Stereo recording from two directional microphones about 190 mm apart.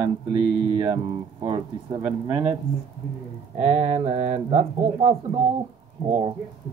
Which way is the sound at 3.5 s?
35° right (ahead or behind).